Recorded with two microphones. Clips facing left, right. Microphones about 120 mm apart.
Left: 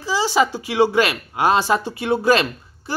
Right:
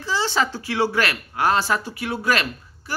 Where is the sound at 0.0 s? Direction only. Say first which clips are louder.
Left 4 dB; 10° left (ahead or behind).